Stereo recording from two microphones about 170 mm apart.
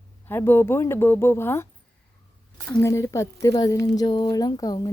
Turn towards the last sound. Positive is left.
turn(degrees=25)  # may be behind; listen again after turning